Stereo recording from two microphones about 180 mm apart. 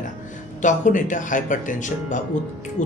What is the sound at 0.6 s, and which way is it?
Speech, 45° left (ahead or behind).